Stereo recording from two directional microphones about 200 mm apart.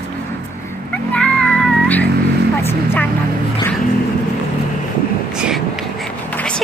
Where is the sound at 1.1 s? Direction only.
5° left (ahead or behind).